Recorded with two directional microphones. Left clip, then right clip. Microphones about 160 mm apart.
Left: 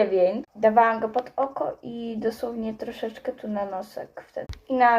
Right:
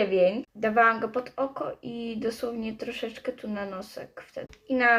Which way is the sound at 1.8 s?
10° right (ahead or behind).